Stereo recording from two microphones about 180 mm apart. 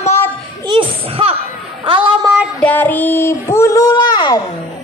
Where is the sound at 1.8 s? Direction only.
25° right (ahead or behind).